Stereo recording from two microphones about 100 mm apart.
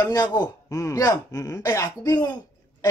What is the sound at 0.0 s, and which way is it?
Speech, 40° left (ahead or behind).